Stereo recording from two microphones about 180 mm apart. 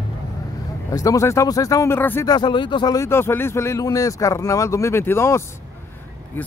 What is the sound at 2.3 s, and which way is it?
Speech, 25° left (ahead or behind).